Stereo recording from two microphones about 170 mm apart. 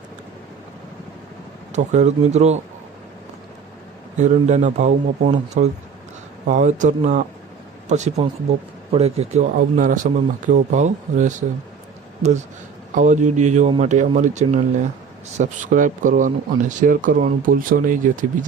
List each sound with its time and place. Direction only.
1.7 s speech: 45° right (ahead or behind)
4.2 s speech: 45° right (ahead or behind)
9.6 s speech: 50° right (ahead or behind)